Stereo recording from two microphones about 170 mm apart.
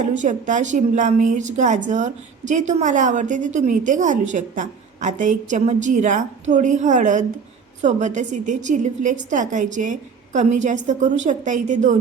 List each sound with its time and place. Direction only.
0.0 s a woman's voice: 45° right (ahead or behind)